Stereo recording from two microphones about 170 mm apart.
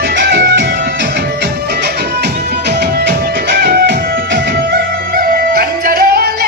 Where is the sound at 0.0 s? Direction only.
70° right (ahead or behind).